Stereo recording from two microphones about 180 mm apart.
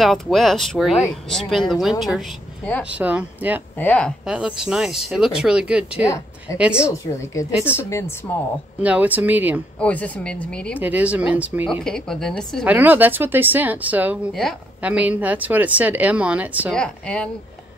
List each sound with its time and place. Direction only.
0.0 s speech: centre (ahead or behind)
2.8 s speech: 5° right (ahead or behind)
3.7 s speech: 10° left (ahead or behind)
4.3 s speech: 5° right (ahead or behind)
7.6 s speech: 15° left (ahead or behind)
8.8 s speech: 10° right (ahead or behind)
9.8 s speech: 10° left (ahead or behind)
10.8 s speech: 10° right (ahead or behind)
11.8 s speech: 5° left (ahead or behind)
12.6 s speech: 10° right (ahead or behind)
16.7 s speech: 5° left (ahead or behind)